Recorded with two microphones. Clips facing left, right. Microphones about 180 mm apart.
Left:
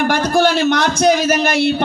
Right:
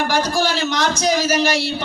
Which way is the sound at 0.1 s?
60° left (ahead or behind).